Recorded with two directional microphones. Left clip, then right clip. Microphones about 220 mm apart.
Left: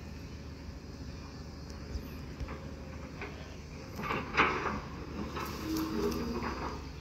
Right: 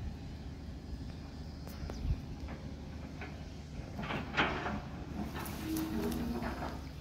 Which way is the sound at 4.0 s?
50° right (ahead or behind).